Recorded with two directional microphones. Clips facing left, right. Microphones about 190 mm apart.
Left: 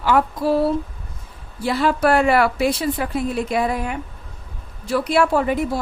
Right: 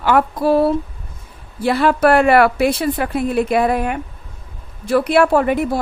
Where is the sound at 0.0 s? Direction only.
60° right (ahead or behind).